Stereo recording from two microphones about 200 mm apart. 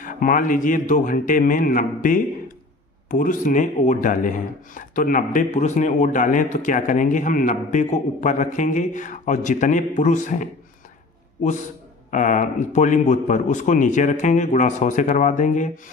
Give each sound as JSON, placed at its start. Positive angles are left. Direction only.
{"t": 0.0, "sound": "a man's voice", "side_deg": 40}
{"t": 12.1, "sound": "a man's voice", "side_deg": 40}